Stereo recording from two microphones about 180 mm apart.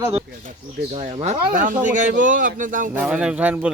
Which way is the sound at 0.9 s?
35° right (ahead or behind).